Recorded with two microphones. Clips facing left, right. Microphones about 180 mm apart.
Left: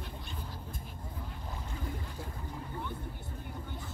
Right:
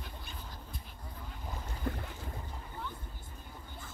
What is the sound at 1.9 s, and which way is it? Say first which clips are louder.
Boat: right 7 dB; 60° right (ahead or behind).